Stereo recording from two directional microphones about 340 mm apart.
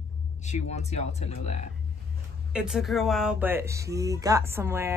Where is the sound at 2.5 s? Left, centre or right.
Centre.